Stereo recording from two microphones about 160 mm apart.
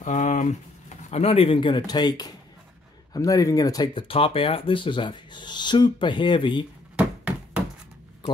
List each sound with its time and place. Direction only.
0.0 s speech: 50° left (ahead or behind); by 6.6 s 30° left (ahead or behind)